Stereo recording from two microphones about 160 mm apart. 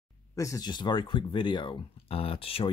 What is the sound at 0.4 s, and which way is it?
Speech, 20° left (ahead or behind).